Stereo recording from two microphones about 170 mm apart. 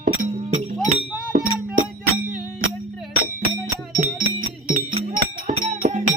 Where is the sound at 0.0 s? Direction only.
40° right (ahead or behind).